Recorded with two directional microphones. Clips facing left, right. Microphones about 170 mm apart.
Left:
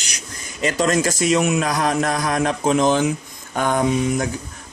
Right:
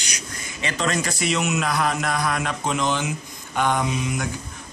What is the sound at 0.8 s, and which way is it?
A man's voice, 45° left (ahead or behind).